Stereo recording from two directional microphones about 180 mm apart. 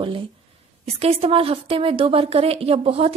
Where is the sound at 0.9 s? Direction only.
35° right (ahead or behind).